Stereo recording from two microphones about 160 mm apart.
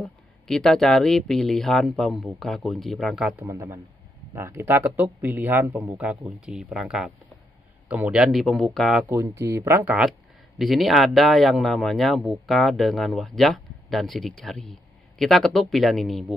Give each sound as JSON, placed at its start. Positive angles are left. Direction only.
{"t": 0.0, "sound": "speech", "side_deg": 0}
{"t": 9.0, "sound": "speech", "side_deg": -20}